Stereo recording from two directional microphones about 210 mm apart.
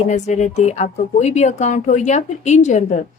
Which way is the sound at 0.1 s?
35° left (ahead or behind).